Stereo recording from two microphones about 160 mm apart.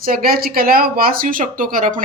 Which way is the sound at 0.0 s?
65° right (ahead or behind).